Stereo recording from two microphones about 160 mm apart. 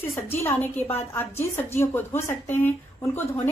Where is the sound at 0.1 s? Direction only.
15° left (ahead or behind).